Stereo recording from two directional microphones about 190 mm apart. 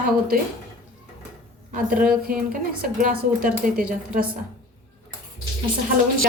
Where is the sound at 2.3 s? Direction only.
45° right (ahead or behind).